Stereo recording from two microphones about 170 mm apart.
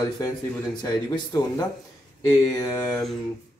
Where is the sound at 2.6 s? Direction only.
20° left (ahead or behind).